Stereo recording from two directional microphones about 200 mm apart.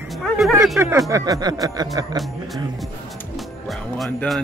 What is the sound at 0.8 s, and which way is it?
Speech, 15° right (ahead or behind).